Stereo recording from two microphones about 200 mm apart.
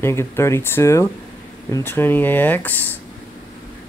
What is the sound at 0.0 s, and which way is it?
Speech, 15° left (ahead or behind).